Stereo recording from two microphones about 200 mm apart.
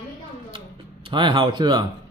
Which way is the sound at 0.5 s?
25° right (ahead or behind).